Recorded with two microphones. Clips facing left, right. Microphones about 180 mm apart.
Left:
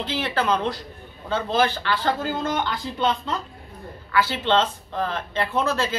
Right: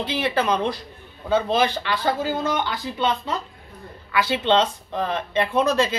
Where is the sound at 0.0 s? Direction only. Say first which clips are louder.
Right 2 dB; 15° right (ahead or behind).